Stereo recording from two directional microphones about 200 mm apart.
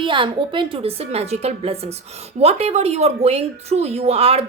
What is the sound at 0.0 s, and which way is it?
A woman's voice, 25° right (ahead or behind).